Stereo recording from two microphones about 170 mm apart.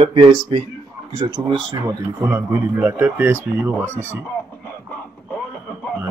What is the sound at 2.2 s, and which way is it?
Speech, 10° right (ahead or behind).